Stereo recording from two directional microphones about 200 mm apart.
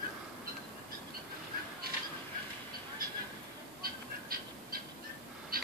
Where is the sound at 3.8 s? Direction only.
45° right (ahead or behind).